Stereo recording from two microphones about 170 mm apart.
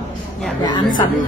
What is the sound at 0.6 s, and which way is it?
Speech, 25° left (ahead or behind).